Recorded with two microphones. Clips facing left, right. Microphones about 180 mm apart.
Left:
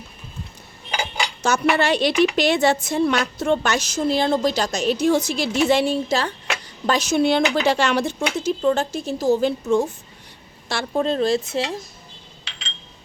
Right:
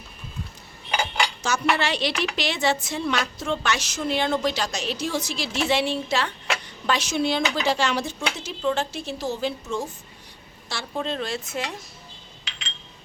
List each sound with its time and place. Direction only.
1.4 s a woman's voice: 55° left (ahead or behind)
11.0 s speech: 40° left (ahead or behind)